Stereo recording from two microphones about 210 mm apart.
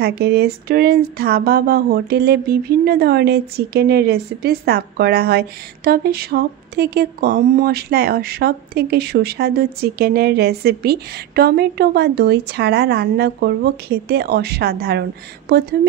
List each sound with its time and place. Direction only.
0.0 s speech: 50° right (ahead or behind)